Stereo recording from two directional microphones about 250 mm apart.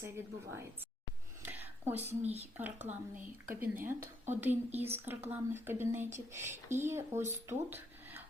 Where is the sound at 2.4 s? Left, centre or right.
Centre.